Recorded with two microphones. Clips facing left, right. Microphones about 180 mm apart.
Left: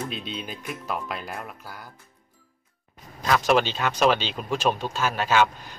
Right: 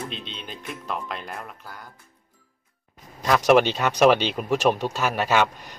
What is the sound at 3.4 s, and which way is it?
A man's voice, 65° right (ahead or behind).